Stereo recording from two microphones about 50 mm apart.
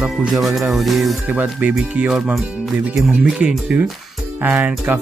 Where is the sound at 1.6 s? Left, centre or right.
Right.